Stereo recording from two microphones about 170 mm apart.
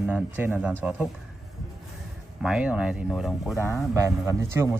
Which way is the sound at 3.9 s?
15° right (ahead or behind).